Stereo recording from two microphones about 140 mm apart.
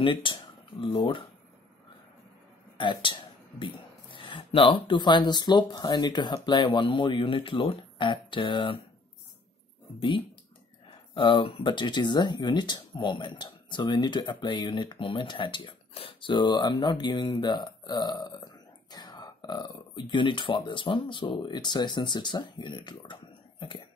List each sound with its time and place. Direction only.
0.0 s speech: 35° left (ahead or behind)
2.8 s speech: 35° left (ahead or behind)
9.9 s speech: 35° left (ahead or behind)